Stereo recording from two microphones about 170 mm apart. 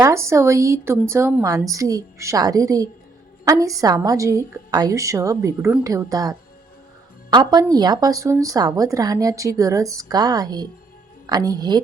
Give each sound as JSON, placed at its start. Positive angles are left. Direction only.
{"t": 0.0, "sound": "speech", "side_deg": -15}